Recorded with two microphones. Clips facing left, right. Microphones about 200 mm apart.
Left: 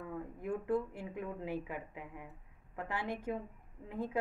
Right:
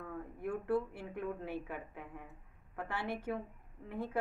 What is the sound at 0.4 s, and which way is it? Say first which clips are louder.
A woman's voice: even; 15° left (ahead or behind).